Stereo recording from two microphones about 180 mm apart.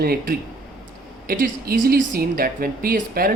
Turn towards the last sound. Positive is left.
turn(degrees=-55)  # may be behind; listen again after turning